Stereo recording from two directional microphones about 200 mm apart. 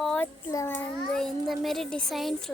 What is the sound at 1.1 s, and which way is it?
A child's voice, centre (ahead or behind).